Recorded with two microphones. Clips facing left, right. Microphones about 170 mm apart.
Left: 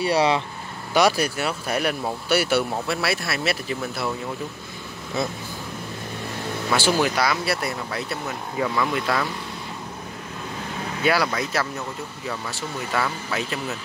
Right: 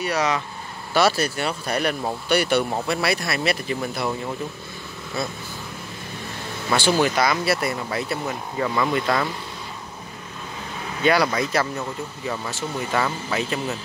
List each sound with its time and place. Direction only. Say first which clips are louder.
0.0 s speech: left 3 dB; 30° left (ahead or behind)
0.9 s speech: even; 15° left (ahead or behind)
6.7 s speech: right 2 dB; 5° left (ahead or behind)
11.1 s speech: right 3 dB; centre (ahead or behind)